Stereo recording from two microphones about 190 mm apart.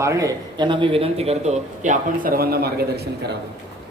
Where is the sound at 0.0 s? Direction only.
15° right (ahead or behind); by 3.3 s 60° right (ahead or behind).